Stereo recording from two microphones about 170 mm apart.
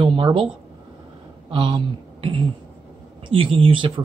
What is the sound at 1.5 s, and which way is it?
Speech, 30° right (ahead or behind).